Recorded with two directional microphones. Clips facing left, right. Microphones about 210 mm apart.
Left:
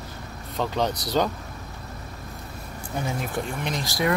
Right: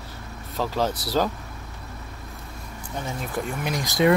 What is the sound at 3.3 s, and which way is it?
Speech, 10° right (ahead or behind).